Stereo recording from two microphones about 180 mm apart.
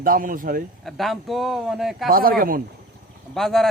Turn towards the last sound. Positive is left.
turn(degrees=0)  # may be behind; listen again after turning